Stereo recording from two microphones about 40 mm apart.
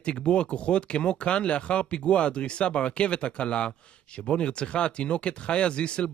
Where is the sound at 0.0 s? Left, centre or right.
Left.